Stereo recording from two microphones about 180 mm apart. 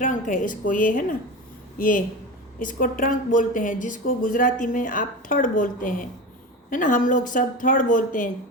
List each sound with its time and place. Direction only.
0.0 s speech: 45° left (ahead or behind)